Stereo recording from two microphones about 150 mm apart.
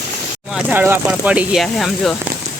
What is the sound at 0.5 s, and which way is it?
Speech, 10° right (ahead or behind).